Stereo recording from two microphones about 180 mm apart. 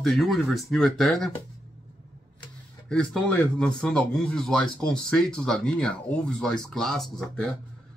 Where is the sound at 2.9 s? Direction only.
5° left (ahead or behind).